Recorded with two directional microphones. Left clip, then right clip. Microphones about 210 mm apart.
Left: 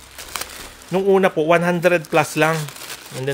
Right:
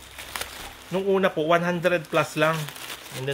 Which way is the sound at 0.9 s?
40° left (ahead or behind).